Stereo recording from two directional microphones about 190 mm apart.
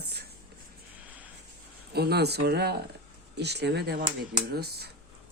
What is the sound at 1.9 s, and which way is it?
Speech, 55° right (ahead or behind).